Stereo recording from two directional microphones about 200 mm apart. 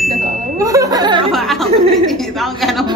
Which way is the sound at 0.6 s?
15° right (ahead or behind).